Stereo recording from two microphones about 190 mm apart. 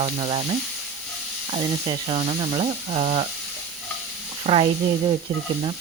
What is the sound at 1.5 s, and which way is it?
Speech, 25° right (ahead or behind).